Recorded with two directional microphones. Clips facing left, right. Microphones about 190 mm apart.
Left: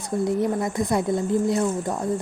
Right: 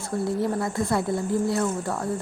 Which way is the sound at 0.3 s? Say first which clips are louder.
Left 2 dB; 20° left (ahead or behind).